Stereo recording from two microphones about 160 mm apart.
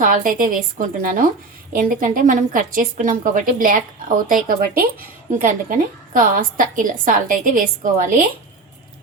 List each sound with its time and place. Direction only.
0.0 s a woman's voice: 60° right (ahead or behind)